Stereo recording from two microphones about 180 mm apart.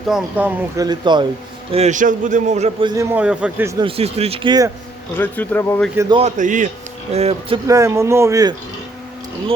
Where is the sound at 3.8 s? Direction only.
35° right (ahead or behind).